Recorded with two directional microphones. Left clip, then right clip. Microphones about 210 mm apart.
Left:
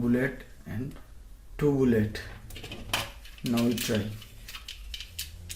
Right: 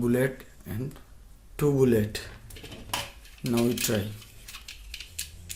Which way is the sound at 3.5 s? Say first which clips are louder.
Right 2 dB; 40° right (ahead or behind).